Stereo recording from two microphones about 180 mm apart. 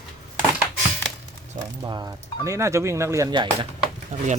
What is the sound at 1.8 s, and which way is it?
Speech, 25° right (ahead or behind).